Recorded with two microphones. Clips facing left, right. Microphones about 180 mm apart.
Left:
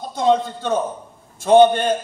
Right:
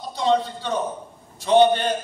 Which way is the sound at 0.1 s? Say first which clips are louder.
Left 3 dB; 50° left (ahead or behind).